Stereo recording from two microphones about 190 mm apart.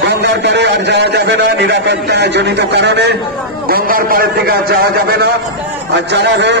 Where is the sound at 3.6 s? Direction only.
50° right (ahead or behind).